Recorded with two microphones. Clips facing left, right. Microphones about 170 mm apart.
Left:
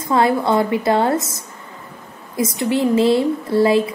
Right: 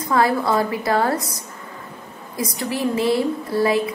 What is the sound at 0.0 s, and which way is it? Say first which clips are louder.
Speech: left 2 dB; 25° left (ahead or behind).